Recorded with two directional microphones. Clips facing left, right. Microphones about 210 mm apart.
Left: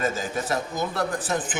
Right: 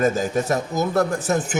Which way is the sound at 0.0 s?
40° right (ahead or behind).